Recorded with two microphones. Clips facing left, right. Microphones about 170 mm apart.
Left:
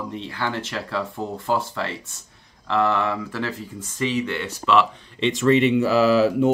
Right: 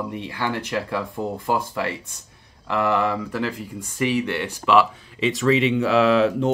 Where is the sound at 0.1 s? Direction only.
15° right (ahead or behind).